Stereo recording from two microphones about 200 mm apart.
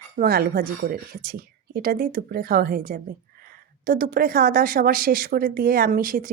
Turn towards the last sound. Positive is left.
turn(degrees=-45)  # may be behind; listen again after turning